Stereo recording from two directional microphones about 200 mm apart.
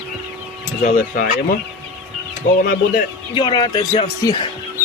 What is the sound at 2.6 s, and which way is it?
Speech, 45° left (ahead or behind).